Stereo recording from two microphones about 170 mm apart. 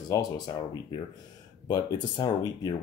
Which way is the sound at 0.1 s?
20° left (ahead or behind).